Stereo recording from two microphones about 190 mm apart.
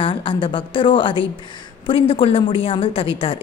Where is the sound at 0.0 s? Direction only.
25° left (ahead or behind).